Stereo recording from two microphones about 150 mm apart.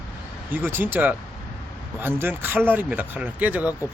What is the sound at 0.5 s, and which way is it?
Speech, 15° right (ahead or behind).